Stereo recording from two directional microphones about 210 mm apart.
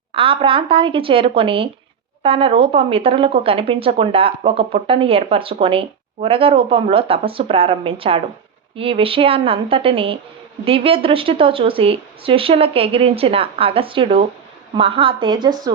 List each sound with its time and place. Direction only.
0.1 s speech: 25° right (ahead or behind)